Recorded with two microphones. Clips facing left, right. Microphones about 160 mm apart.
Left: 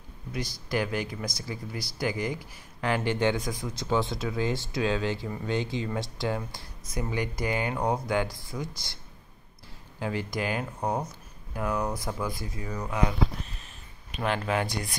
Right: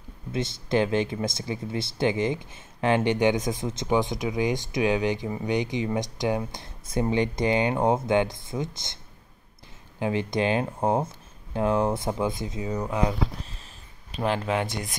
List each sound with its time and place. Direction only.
0.3 s speech: 25° right (ahead or behind)